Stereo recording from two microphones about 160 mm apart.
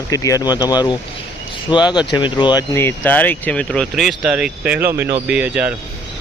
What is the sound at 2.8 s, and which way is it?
Speech, 10° left (ahead or behind).